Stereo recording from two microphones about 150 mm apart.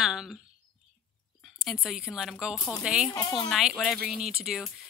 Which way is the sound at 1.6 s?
5° right (ahead or behind).